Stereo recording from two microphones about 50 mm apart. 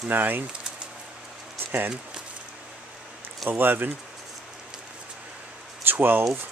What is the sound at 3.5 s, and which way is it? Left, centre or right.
Speech, right.